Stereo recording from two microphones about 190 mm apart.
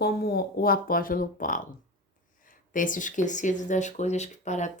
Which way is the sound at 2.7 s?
45° left (ahead or behind).